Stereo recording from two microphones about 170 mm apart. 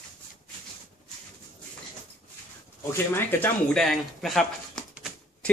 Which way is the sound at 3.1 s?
5° left (ahead or behind).